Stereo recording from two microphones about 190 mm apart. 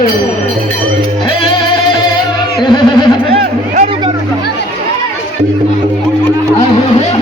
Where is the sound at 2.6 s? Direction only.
25° left (ahead or behind).